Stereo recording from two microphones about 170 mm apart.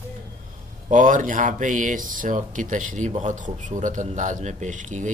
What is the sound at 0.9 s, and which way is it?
Speech, 50° right (ahead or behind).